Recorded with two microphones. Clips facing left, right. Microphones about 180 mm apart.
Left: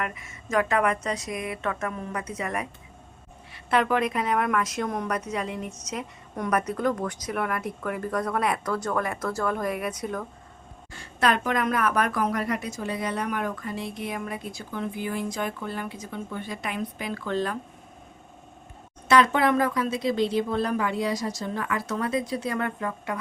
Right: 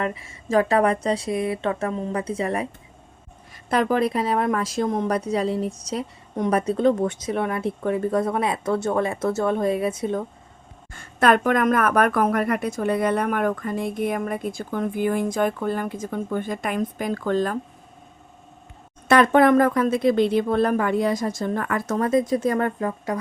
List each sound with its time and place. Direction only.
0.0 s speech: 30° right (ahead or behind)
3.7 s speech: 35° right (ahead or behind)
10.9 s speech: 50° right (ahead or behind)
19.0 s speech: 50° right (ahead or behind); by 23.1 s 35° right (ahead or behind)